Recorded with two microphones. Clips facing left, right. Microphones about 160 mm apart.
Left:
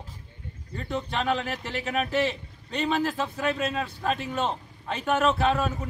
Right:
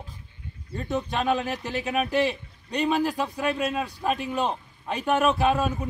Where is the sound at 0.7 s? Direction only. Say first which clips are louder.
Right 2 dB; 15° right (ahead or behind).